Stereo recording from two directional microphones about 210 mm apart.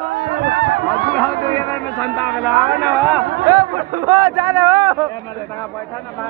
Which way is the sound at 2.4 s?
Centre (ahead or behind).